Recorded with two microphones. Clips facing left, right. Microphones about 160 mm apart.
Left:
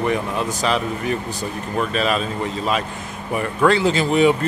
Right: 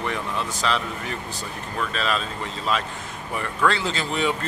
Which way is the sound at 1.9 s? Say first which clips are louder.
Left 5 dB; 15° left (ahead or behind).